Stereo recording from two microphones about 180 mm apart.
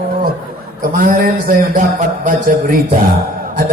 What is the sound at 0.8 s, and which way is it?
A man's voice, 50° right (ahead or behind).